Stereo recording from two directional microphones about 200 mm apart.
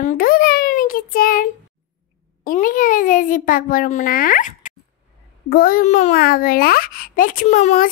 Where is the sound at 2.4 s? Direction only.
45° left (ahead or behind).